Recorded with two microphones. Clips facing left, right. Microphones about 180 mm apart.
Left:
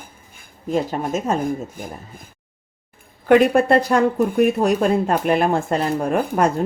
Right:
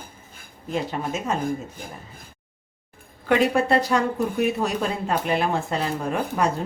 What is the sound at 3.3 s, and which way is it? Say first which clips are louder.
Speech: left 6 dB; 55° left (ahead or behind).